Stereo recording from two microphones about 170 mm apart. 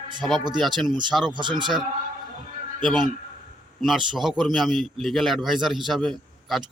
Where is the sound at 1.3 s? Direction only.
25° right (ahead or behind).